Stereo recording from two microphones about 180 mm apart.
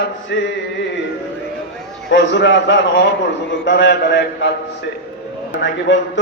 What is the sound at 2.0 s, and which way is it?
A man's voice, 80° left.